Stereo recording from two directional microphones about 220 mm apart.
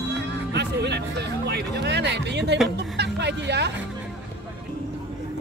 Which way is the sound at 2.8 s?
50° right (ahead or behind).